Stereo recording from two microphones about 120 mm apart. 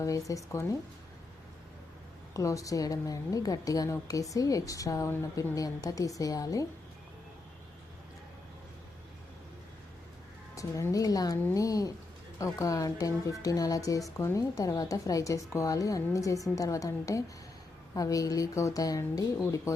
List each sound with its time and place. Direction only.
0.0 s a woman's voice: 30° left (ahead or behind)
2.3 s a woman's voice: 30° left (ahead or behind)
10.5 s a woman's voice: 25° left (ahead or behind)